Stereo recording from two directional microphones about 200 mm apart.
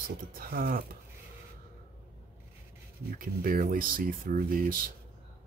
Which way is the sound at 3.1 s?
45° right (ahead or behind).